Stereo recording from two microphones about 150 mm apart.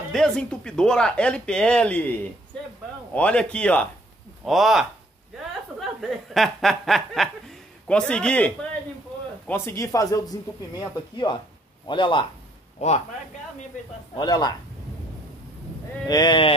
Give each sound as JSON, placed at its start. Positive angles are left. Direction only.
{"t": 0.1, "sound": "speech", "side_deg": 5}
{"t": 3.2, "sound": "a man's voice", "side_deg": 10}
{"t": 9.5, "sound": "speech", "side_deg": 20}
{"t": 14.1, "sound": "speech", "side_deg": 30}
{"t": 16.1, "sound": "speech", "side_deg": 30}